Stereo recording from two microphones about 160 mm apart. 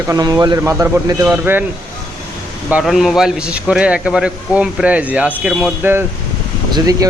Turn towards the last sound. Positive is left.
turn(degrees=-20)  # may be behind; listen again after turning